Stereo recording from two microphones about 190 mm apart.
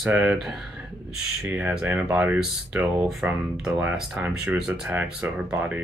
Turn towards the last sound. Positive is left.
turn(degrees=-5)  # may be behind; listen again after turning